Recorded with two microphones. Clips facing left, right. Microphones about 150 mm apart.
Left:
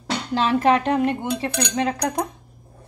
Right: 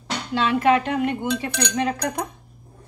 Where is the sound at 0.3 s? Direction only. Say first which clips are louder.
Even; 35° left (ahead or behind).